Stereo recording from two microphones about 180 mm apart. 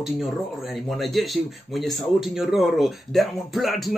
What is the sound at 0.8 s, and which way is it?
Speech, centre (ahead or behind).